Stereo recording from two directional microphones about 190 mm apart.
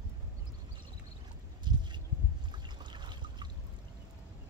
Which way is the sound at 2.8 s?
25° right (ahead or behind).